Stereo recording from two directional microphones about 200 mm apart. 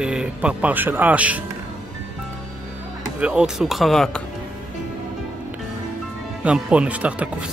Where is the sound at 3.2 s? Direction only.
5° right (ahead or behind).